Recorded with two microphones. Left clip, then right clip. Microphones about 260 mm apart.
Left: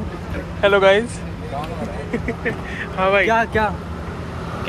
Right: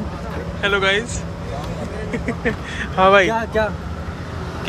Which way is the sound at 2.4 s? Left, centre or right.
Centre.